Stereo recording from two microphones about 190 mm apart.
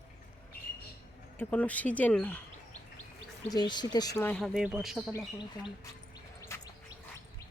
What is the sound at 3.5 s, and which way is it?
Speech, 20° left (ahead or behind).